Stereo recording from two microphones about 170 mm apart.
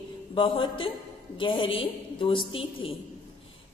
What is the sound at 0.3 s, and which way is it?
A woman's voice, 30° left (ahead or behind).